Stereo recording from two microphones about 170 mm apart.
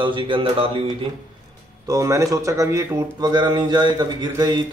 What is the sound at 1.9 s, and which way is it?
Speech, 20° right (ahead or behind).